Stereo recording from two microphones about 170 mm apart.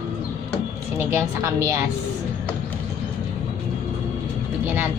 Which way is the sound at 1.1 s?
15° right (ahead or behind).